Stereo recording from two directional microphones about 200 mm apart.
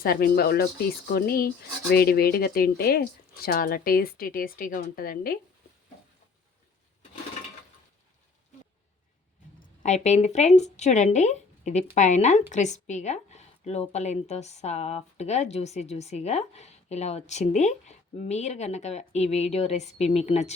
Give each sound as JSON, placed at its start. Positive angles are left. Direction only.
{"t": 0.0, "sound": "speech", "side_deg": 50}
{"t": 9.6, "sound": "a woman's voice", "side_deg": 35}